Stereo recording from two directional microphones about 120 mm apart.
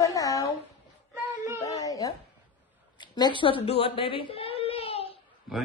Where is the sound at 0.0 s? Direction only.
30° left (ahead or behind).